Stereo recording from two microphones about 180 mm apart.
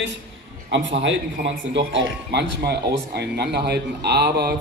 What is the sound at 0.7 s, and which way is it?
A man's voice, 90° right.